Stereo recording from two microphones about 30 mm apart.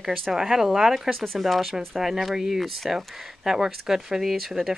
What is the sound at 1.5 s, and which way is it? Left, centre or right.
Speech, centre.